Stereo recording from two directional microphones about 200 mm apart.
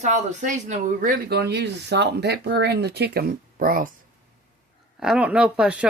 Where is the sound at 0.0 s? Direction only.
35° right (ahead or behind).